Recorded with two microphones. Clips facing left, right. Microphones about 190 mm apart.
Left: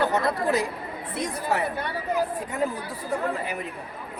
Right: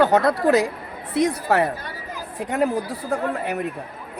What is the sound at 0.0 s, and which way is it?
Speech, 80° right.